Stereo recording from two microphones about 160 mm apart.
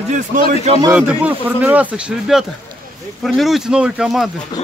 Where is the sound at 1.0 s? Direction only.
10° right (ahead or behind).